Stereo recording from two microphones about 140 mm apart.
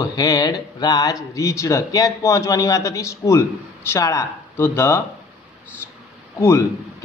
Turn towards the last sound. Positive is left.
turn(degrees=20)  # may be behind; listen again after turning